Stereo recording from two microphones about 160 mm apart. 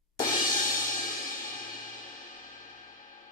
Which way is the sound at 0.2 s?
55° left (ahead or behind).